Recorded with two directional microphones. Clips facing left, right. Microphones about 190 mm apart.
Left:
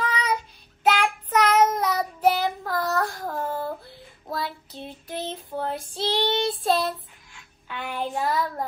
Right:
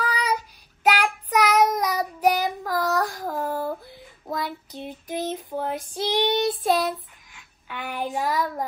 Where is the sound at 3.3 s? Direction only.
15° right (ahead or behind).